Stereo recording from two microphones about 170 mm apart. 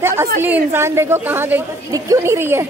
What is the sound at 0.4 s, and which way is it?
A woman's voice, 15° right (ahead or behind).